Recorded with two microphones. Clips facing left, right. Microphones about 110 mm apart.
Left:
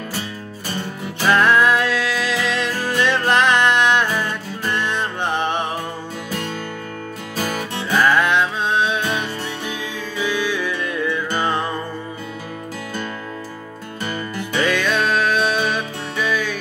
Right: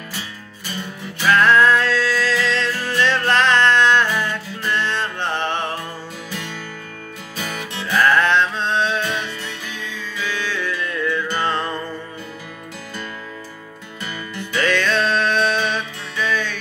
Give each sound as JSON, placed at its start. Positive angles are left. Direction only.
{"t": 1.3, "sound": "music", "side_deg": 15}
{"t": 7.3, "sound": "music", "side_deg": 45}
{"t": 7.9, "sound": "music", "side_deg": 10}
{"t": 14.6, "sound": "music", "side_deg": 10}